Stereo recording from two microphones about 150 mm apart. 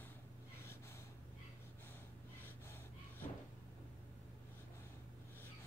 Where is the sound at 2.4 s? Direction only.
15° left (ahead or behind).